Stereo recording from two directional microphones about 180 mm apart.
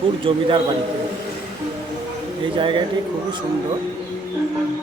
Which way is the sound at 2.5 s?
25° right (ahead or behind).